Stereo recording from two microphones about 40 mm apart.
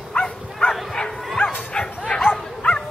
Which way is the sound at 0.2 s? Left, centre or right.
Left.